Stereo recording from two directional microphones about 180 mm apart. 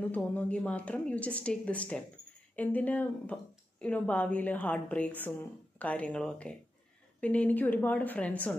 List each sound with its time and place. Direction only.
0.1 s a woman's voice: 5° left (ahead or behind)